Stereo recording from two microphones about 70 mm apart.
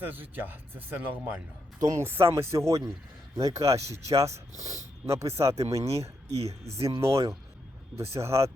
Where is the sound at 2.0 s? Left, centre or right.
Right.